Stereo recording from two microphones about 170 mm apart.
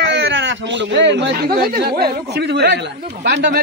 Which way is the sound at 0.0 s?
90° right.